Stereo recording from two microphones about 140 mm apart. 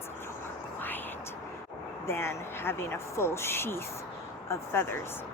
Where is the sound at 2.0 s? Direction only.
20° left (ahead or behind).